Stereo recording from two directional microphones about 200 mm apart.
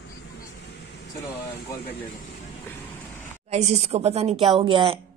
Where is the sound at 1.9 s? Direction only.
45° left (ahead or behind).